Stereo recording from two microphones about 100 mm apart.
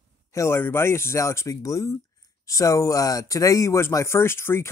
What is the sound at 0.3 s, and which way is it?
Speech, 30° left (ahead or behind).